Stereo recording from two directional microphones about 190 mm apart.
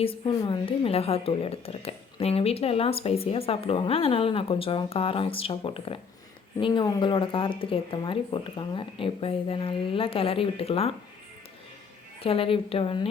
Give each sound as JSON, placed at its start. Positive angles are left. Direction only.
{"t": 0.0, "sound": "a woman's voice", "side_deg": 30}
{"t": 12.2, "sound": "speech", "side_deg": 30}